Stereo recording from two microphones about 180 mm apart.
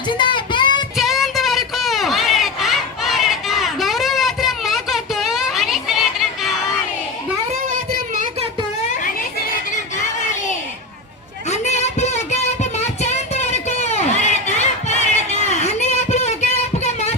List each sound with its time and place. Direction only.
0.1 s child singing: 25° left (ahead or behind)
0.9 s a sound: centre (ahead or behind)
11.4 s music: 40° left (ahead or behind)